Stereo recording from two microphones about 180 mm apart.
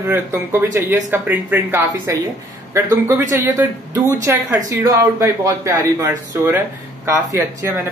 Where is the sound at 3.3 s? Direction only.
20° right (ahead or behind).